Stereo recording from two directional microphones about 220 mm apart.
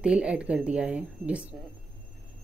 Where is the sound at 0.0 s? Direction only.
5° right (ahead or behind).